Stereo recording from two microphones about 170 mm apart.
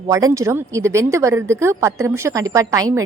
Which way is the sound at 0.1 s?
20° right (ahead or behind).